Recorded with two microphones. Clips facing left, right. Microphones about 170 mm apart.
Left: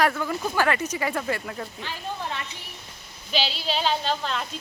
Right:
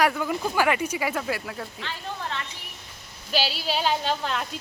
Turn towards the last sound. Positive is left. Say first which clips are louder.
# even
turn(degrees=-10)  # may be behind; listen again after turning